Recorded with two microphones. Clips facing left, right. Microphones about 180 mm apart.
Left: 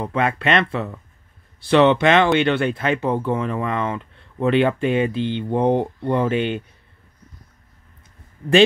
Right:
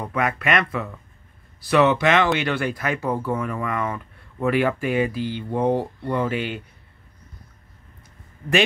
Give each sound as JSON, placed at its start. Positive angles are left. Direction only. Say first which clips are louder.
{"t": 0.0, "sound": "speech", "louder": "left 3 dB", "side_deg": 25}